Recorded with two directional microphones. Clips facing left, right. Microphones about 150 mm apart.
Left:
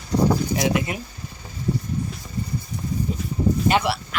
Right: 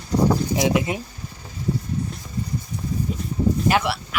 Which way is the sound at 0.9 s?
20° right (ahead or behind).